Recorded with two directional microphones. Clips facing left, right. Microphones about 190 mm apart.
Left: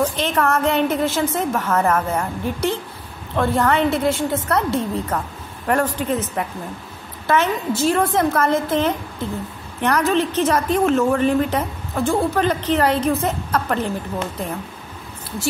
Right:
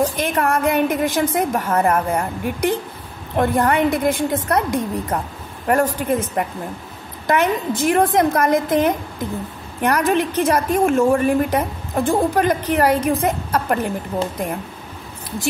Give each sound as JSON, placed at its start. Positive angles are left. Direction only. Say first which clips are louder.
{"t": 0.1, "sound": "a woman's voice", "louder": "even", "side_deg": -10}